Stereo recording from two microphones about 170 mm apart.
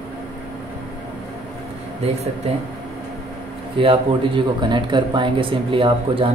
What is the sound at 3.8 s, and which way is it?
Speech, 30° right (ahead or behind).